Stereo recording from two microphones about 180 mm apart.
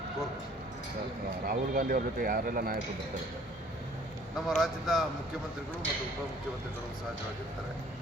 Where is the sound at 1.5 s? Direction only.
55° right (ahead or behind).